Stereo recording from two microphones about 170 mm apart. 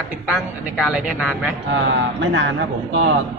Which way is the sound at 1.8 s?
90° right.